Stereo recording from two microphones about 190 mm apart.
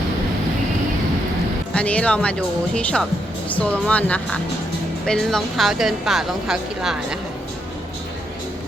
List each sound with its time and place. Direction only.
1.7 s speech: 5° left (ahead or behind)